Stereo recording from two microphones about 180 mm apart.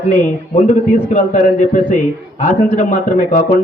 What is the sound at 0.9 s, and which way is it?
A man's voice, 45° left (ahead or behind).